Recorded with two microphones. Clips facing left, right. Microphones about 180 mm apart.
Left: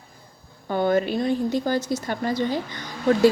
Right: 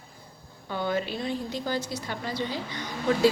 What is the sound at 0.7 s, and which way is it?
A woman's voice, 50° left (ahead or behind).